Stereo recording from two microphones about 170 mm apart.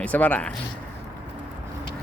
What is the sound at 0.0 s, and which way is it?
Speech, 10° left (ahead or behind).